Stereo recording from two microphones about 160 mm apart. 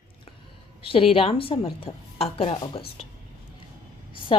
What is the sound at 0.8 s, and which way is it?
A woman's voice, 35° left (ahead or behind).